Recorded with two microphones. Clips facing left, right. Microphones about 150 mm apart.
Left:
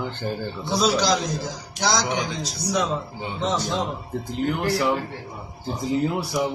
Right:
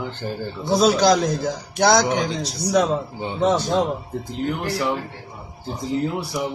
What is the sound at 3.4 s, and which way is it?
Speech, 55° right (ahead or behind).